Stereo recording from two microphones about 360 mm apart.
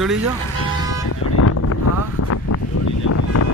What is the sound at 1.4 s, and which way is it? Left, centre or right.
Vehicle, left.